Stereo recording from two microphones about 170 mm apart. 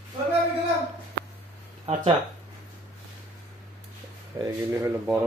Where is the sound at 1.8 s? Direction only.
35° right (ahead or behind).